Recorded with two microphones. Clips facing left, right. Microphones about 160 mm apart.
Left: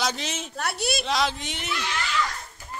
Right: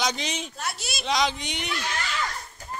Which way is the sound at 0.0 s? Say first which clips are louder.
Even; centre (ahead or behind).